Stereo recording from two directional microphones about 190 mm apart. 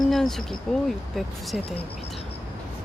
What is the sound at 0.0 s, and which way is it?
Speech, centre (ahead or behind).